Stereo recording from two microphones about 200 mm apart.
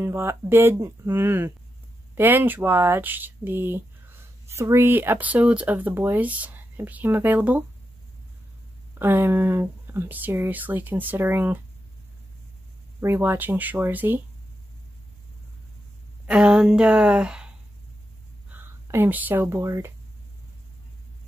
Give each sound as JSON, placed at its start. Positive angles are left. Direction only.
{"t": 0.0, "sound": "speech", "side_deg": -15}
{"t": 8.9, "sound": "speech", "side_deg": -10}
{"t": 13.0, "sound": "speech", "side_deg": -10}
{"t": 16.3, "sound": "speech", "side_deg": -5}
{"t": 18.5, "sound": "speech", "side_deg": -10}